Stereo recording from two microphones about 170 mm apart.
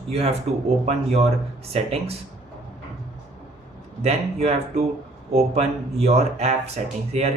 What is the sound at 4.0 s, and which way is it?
Speech, 40° right (ahead or behind).